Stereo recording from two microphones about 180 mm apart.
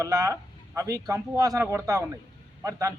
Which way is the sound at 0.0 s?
20° right (ahead or behind).